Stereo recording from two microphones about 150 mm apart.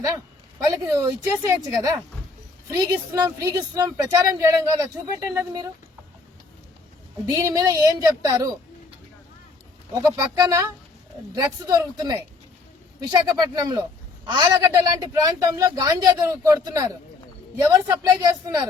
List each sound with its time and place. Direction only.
0.6 s speech: 25° right (ahead or behind)
7.3 s speech: 20° right (ahead or behind)
9.9 s speech: 25° right (ahead or behind)